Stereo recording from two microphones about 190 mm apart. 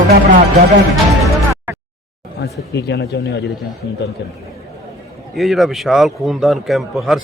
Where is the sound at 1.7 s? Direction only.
10° right (ahead or behind).